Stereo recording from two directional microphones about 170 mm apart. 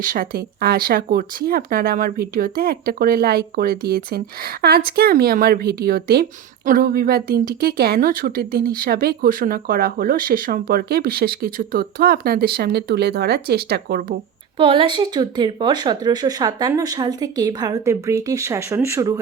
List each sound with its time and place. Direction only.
0.0 s speech: 55° right (ahead or behind)
14.6 s speech: 30° right (ahead or behind)